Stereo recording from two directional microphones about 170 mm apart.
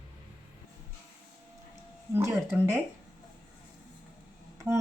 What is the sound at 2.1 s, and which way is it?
Speech, 15° right (ahead or behind).